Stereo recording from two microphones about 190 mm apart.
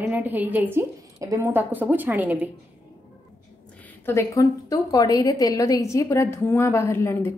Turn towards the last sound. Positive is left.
turn(degrees=15)  # may be behind; listen again after turning